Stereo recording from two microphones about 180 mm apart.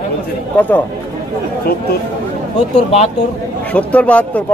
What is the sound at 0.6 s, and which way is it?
Speech, 10° left (ahead or behind).